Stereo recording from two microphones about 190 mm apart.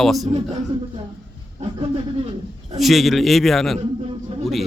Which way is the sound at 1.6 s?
30° right (ahead or behind).